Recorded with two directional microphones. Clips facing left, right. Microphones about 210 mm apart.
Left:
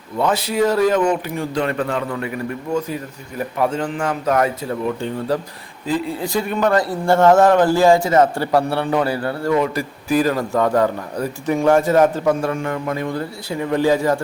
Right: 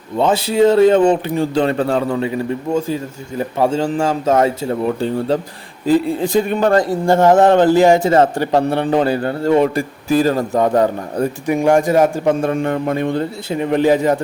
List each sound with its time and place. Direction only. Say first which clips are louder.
0.2 s speech: right 5 dB; 25° right (ahead or behind)
6.8 s a man's voice: right 2 dB; 15° right (ahead or behind); by 10.4 s 35° right (ahead or behind)
10.5 s a man's voice: right 2 dB; 20° right (ahead or behind)
12.2 s speech: right 3 dB; 20° right (ahead or behind)